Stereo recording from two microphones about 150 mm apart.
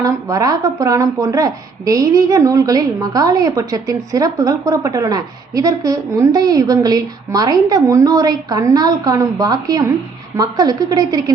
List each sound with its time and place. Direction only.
0.0 s a woman's voice: 20° right (ahead or behind)